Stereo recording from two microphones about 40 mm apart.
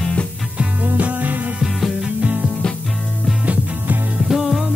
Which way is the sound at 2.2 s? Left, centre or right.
Right.